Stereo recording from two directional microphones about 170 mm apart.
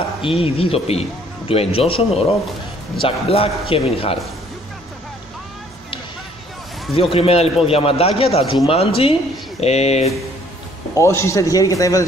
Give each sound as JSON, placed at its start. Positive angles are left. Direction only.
{"t": 0.2, "sound": "a man's voice", "side_deg": 35}
{"t": 6.9, "sound": "a man's voice", "side_deg": 35}
{"t": 11.0, "sound": "a man's voice", "side_deg": 15}